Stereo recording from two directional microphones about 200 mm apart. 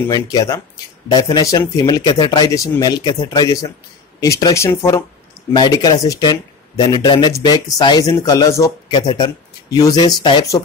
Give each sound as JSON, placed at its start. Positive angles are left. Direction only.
{"t": 0.1, "sound": "speech", "side_deg": 20}